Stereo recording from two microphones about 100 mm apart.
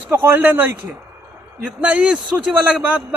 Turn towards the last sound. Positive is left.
turn(degrees=-15)  # may be behind; listen again after turning